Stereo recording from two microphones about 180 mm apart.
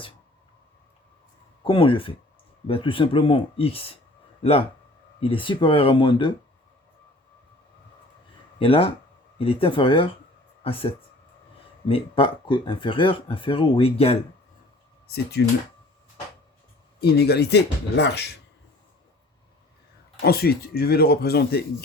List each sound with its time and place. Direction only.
1.6 s speech: 30° left (ahead or behind)
5.2 s speech: 30° left (ahead or behind)
8.5 s speech: 30° left (ahead or behind)
15.0 s speech: 65° left (ahead or behind)
17.0 s speech: 65° left (ahead or behind)
20.2 s a man's voice: 60° left (ahead or behind)